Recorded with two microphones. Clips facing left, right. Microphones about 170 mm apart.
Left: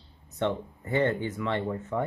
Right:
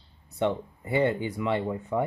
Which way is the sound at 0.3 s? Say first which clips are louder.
Right 2 dB; 10° right (ahead or behind).